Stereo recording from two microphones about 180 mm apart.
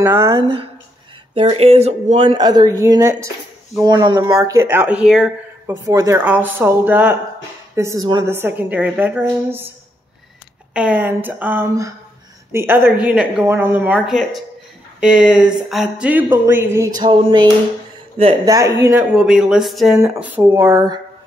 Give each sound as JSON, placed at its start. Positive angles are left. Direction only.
{"t": 0.0, "sound": "a woman's voice", "side_deg": -15}
{"t": 0.4, "sound": "a woman's voice", "side_deg": -25}
{"t": 5.7, "sound": "a woman's voice", "side_deg": -20}
{"t": 10.7, "sound": "a woman's voice", "side_deg": -5}
{"t": 17.0, "sound": "a woman's voice", "side_deg": -25}
{"t": 19.1, "sound": "a woman's voice", "side_deg": 0}